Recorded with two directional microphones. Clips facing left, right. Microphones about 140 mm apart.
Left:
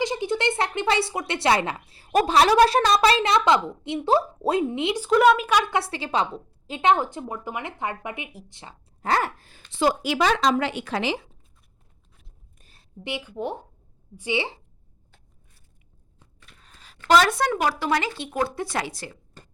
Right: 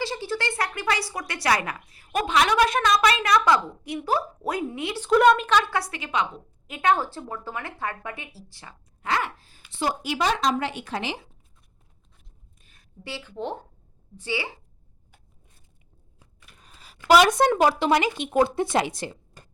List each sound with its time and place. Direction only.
0.0 s speech: 20° left (ahead or behind)
4.9 s a woman's voice: 5° left (ahead or behind)
5.8 s a woman's voice: 30° left (ahead or behind)
9.0 s gasp: 40° left (ahead or behind)
9.4 s speech: 70° left (ahead or behind)
9.7 s speech: 90° left
12.5 s a sound: 35° left (ahead or behind)
13.0 s a woman's voice: 20° left (ahead or behind)
14.2 s a woman's voice: 20° left (ahead or behind)
16.4 s speech: 10° right (ahead or behind)